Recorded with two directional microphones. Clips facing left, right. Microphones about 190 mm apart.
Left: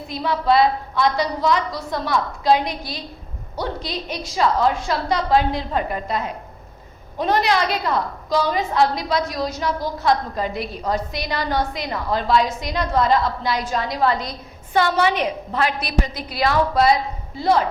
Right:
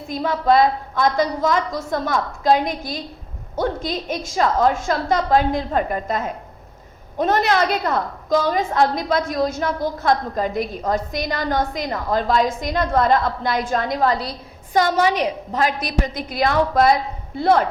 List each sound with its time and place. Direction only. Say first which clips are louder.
0.1 s a woman's voice: right 2 dB; 45° right (ahead or behind)